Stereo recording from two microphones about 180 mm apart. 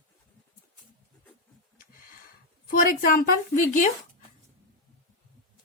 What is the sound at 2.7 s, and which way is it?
Speech, 50° left (ahead or behind).